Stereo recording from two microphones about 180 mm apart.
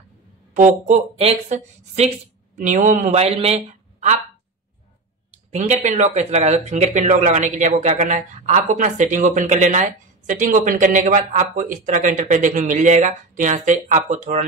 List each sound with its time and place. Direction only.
0.6 s a man's voice: 45° right (ahead or behind)
5.3 s speech: 40° right (ahead or behind)